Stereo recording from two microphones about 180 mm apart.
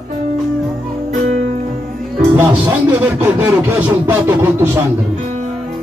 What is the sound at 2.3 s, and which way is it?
Speech, 10° right (ahead or behind).